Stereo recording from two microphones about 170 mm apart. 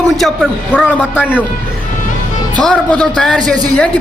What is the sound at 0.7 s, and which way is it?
Speech, 5° right (ahead or behind).